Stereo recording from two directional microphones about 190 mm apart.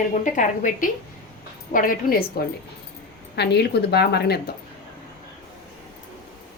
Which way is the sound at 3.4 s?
60° left (ahead or behind).